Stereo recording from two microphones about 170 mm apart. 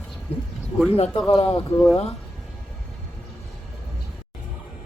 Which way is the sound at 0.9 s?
35° left (ahead or behind).